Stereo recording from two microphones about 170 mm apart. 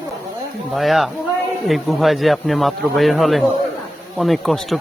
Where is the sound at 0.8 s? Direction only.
Centre (ahead or behind).